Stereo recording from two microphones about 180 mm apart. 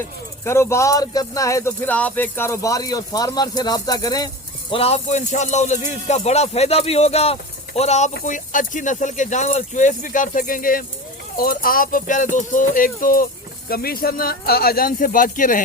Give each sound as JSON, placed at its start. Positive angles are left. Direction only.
{"t": 0.4, "sound": "speech", "side_deg": 15}
{"t": 4.7, "sound": "speech", "side_deg": 35}